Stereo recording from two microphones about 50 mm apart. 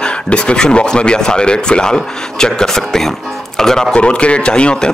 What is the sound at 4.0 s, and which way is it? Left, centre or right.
Speech, left.